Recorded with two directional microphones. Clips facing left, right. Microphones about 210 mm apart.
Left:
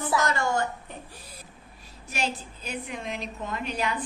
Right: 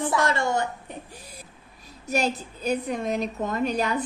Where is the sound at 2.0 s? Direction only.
40° right (ahead or behind).